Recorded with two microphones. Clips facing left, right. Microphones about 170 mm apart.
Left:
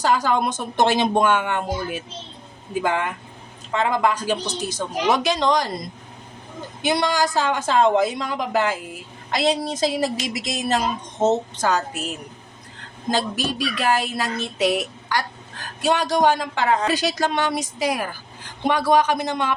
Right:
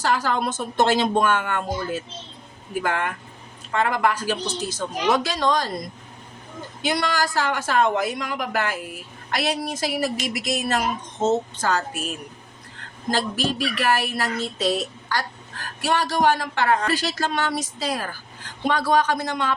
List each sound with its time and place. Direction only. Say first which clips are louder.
0.0 s a woman's voice: left 3 dB; 15° left (ahead or behind)
6.8 s a woman's voice: left 3 dB; 20° left (ahead or behind)
11.2 s speech: left 2 dB; 15° left (ahead or behind)